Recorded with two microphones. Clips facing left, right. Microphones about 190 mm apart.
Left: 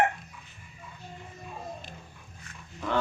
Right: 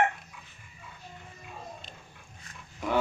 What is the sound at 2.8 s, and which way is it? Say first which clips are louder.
Cattle: right 1 dB; 10° right (ahead or behind).